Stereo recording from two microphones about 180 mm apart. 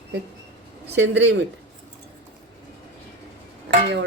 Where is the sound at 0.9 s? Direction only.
80° right.